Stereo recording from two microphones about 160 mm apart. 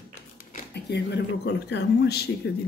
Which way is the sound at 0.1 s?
50° left (ahead or behind).